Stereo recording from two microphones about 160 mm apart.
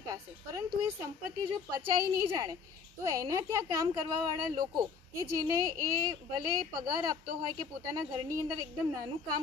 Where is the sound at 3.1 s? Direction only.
20° right (ahead or behind).